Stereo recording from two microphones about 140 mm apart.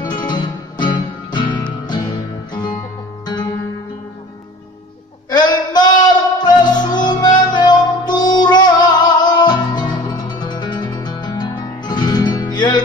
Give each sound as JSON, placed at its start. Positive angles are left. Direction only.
{"t": 0.1, "sound": "music", "side_deg": 35}
{"t": 5.3, "sound": "a sound", "side_deg": 30}
{"t": 6.3, "sound": "music", "side_deg": 30}